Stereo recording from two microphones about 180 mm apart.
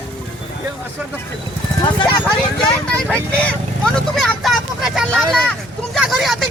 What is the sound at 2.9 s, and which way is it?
Speech, 5° left (ahead or behind).